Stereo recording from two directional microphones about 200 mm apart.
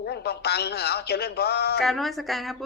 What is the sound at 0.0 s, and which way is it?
Speech, 55° left (ahead or behind).